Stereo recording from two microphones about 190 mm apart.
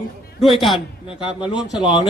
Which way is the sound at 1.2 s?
25° left (ahead or behind).